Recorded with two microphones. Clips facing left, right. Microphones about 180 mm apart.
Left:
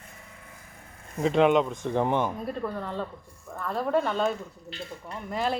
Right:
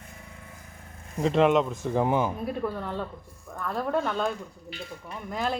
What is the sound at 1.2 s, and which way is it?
Speech, centre (ahead or behind).